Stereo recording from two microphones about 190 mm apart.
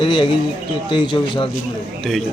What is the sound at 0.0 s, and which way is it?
A man's voice, 25° left (ahead or behind).